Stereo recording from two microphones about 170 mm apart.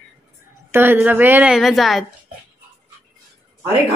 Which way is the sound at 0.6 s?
15° right (ahead or behind).